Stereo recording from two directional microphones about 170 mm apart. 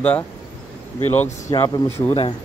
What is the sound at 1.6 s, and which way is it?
Speech, 15° left (ahead or behind).